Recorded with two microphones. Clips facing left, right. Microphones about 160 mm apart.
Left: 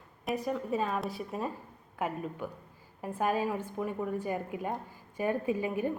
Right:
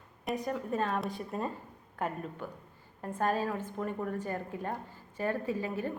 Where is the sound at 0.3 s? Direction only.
Centre (ahead or behind).